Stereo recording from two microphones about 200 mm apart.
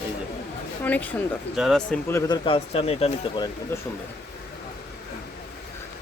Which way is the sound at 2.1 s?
25° left (ahead or behind).